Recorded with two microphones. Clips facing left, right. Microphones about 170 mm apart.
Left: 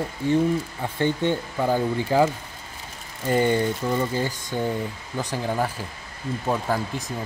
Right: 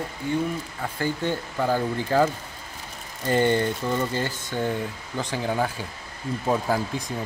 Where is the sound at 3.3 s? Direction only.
10° left (ahead or behind).